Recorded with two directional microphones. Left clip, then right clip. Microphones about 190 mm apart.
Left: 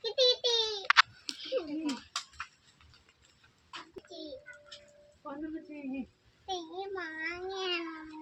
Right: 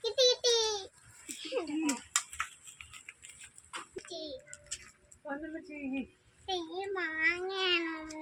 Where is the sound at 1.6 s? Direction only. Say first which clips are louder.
Even; 40° right (ahead or behind).